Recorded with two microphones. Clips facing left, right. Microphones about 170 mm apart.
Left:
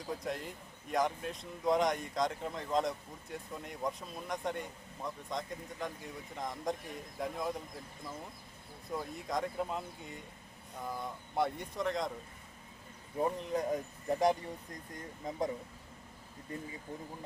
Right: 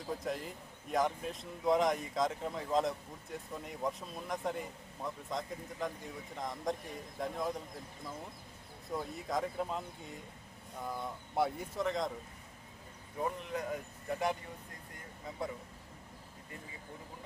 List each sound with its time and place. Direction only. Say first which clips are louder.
0.1 s speech: right 1 dB; centre (ahead or behind)
8.9 s speech: even; centre (ahead or behind)
13.1 s speech: left 4 dB; 35° left (ahead or behind)